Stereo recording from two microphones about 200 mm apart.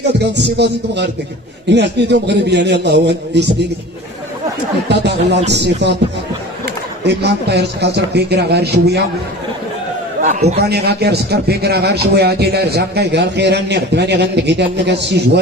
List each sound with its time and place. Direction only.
0.4 s a man's voice: 55° right (ahead or behind)
4.8 s a man's voice: 60° right (ahead or behind)
7.1 s a man's voice: 55° right (ahead or behind)
10.2 s a man's voice: 35° right (ahead or behind)
10.6 s a man's voice: 55° right (ahead or behind)